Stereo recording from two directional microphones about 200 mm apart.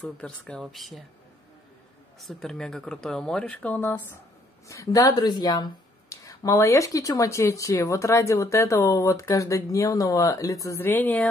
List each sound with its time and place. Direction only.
0.0 s speech: 5° left (ahead or behind)
2.1 s speech: centre (ahead or behind)